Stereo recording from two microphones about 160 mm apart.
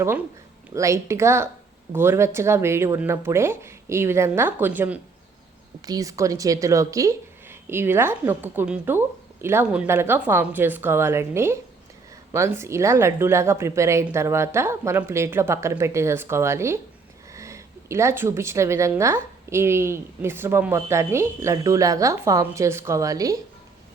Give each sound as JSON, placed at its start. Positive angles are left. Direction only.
{"t": 0.7, "sound": "a woman's voice", "side_deg": -20}
{"t": 5.8, "sound": "a woman's voice", "side_deg": -20}